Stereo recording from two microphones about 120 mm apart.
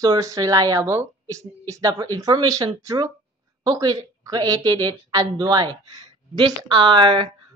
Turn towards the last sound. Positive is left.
turn(degrees=-45)  # may be behind; listen again after turning